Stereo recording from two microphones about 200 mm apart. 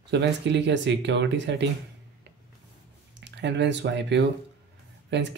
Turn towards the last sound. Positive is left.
turn(degrees=-60)  # may be behind; listen again after turning